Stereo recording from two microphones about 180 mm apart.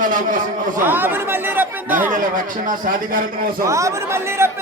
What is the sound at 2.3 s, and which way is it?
Speech, 50° right (ahead or behind).